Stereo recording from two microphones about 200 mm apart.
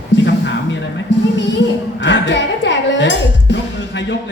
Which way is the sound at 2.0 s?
65° left (ahead or behind).